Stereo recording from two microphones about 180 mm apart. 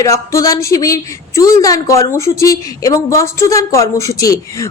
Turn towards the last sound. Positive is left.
turn(degrees=20)  # may be behind; listen again after turning